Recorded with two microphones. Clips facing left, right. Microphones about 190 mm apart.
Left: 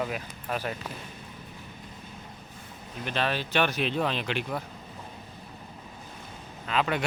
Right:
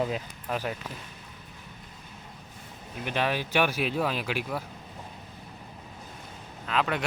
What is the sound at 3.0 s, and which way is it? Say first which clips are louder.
Speech: right 1 dB; 15° right (ahead or behind).